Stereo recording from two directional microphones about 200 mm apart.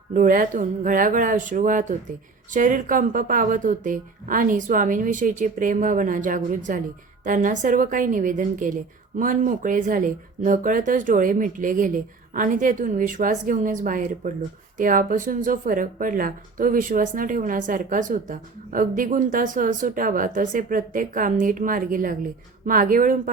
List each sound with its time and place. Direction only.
0.1 s a woman's voice: 40° right (ahead or behind)